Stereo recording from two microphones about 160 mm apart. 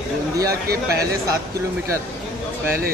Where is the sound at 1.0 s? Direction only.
20° right (ahead or behind).